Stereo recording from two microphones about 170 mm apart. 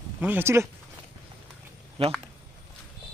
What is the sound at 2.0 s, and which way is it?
Speech, 35° right (ahead or behind).